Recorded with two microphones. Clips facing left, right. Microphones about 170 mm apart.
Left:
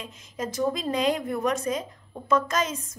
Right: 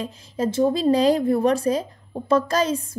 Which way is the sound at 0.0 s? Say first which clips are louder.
Right 8 dB; 35° right (ahead or behind).